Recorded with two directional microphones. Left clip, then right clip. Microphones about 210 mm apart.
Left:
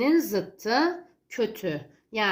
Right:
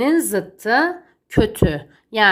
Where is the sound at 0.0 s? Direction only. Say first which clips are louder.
Right 5 dB; 30° right (ahead or behind).